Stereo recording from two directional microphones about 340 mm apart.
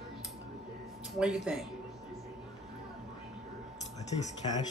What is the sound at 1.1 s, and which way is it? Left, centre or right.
Speech, centre.